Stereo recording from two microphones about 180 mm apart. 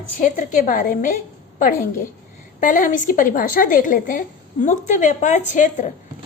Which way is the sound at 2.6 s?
45° left (ahead or behind).